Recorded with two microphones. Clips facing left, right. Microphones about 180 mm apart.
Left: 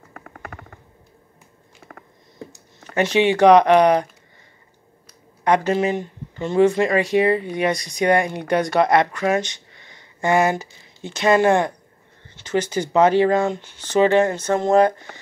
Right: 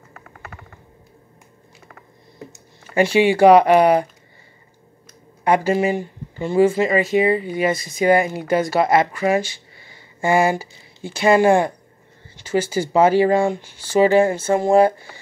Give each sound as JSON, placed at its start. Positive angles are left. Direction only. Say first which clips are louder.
{"t": 0.1, "sound": "a sound", "louder": "left 3 dB", "side_deg": 60}
{"t": 2.5, "sound": "speech", "louder": "right 3 dB", "side_deg": -10}
{"t": 5.4, "sound": "speech", "louder": "right 1 dB", "side_deg": -10}